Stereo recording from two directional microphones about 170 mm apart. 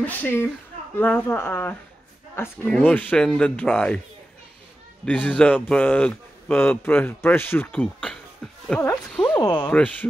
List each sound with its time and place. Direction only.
0.0 s speech: 10° left (ahead or behind)
5.0 s speech: 10° left (ahead or behind)
9.1 s a sound: 10° left (ahead or behind)
9.4 s speech: 25° left (ahead or behind)
9.7 s speech: 10° left (ahead or behind)